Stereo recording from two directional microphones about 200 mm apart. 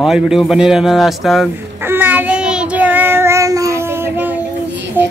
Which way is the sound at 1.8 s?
10° right (ahead or behind).